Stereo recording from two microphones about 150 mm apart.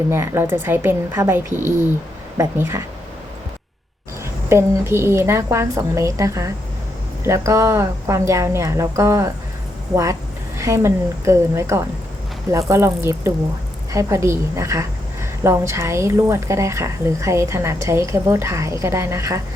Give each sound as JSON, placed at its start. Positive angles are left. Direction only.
{"t": 0.1, "sound": "a woman's voice", "side_deg": -15}
{"t": 4.4, "sound": "a woman's voice", "side_deg": -15}